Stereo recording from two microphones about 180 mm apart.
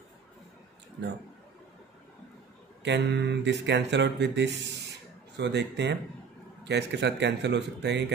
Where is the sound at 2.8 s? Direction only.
75° right (ahead or behind).